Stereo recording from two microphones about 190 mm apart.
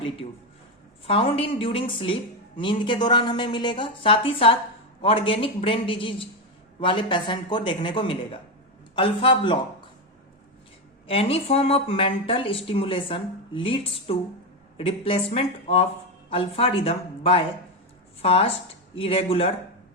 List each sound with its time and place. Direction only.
1.0 s speech: 30° left (ahead or behind)
11.0 s speech: 30° left (ahead or behind)